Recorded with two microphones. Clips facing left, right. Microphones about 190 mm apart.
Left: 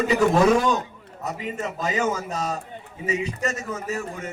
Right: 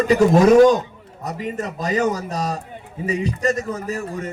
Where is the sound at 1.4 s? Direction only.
40° right (ahead or behind).